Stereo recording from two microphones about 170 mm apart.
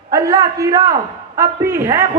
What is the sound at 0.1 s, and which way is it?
A man's voice, 20° right (ahead or behind).